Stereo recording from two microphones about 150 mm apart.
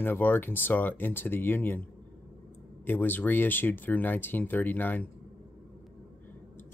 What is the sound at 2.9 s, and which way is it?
Speech, 10° left (ahead or behind).